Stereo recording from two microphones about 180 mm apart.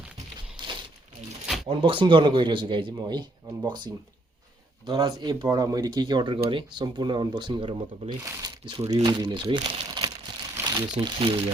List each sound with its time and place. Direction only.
0.6 s crumpling: 25° right (ahead or behind)
1.6 s speech: 30° right (ahead or behind)
9.6 s crumpling: 30° right (ahead or behind)
10.6 s speech: 20° right (ahead or behind)